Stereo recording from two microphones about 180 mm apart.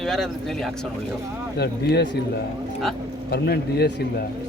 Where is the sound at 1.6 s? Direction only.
65° left (ahead or behind).